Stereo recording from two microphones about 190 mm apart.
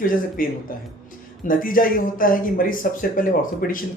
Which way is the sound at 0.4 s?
45° left (ahead or behind).